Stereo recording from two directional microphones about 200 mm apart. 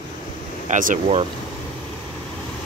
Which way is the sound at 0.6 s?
40° right (ahead or behind).